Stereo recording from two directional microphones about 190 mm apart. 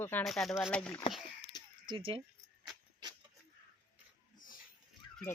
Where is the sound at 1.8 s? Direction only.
25° right (ahead or behind).